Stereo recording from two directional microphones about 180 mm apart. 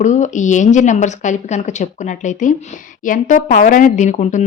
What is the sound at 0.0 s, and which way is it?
A woman's voice, 45° left (ahead or behind).